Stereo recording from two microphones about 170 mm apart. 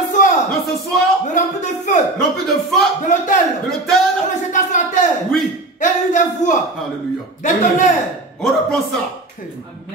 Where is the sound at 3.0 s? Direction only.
50° left (ahead or behind).